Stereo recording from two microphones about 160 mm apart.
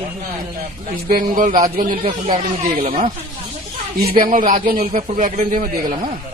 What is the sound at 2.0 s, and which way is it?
Speech, 40° right (ahead or behind).